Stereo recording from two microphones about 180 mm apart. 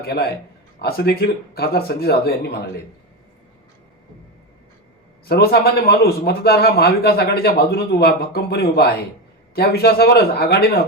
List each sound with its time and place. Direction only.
0.0 s a man's voice: 60° left (ahead or behind)
5.3 s a man's voice: 60° left (ahead or behind)